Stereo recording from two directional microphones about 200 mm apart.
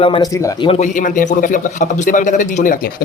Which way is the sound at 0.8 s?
40° left (ahead or behind).